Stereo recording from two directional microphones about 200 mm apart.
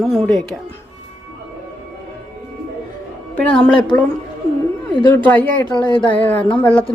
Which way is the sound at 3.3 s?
5° left (ahead or behind).